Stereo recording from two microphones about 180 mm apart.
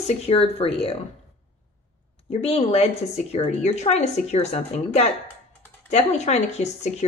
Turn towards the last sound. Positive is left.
turn(degrees=35)  # may be behind; listen again after turning